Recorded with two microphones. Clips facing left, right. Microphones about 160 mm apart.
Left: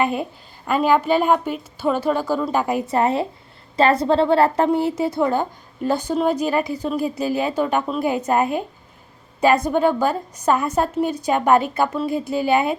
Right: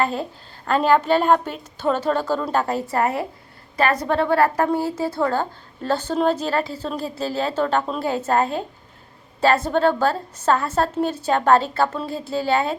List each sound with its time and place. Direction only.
0.0 s a woman's voice: 15° left (ahead or behind)
2.8 s a woman's voice: 25° left (ahead or behind)